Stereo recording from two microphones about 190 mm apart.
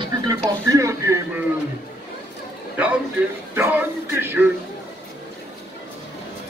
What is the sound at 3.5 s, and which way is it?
Speech, 10° right (ahead or behind).